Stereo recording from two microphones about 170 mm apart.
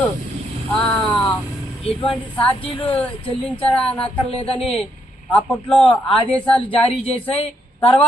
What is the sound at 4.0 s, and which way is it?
Speech, 35° left (ahead or behind).